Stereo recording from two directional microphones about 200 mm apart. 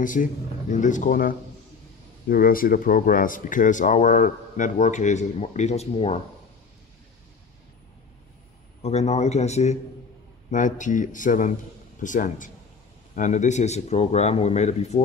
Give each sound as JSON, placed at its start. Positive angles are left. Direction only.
{"t": 0.0, "sound": "speech", "side_deg": 40}
{"t": 8.8, "sound": "speech", "side_deg": 35}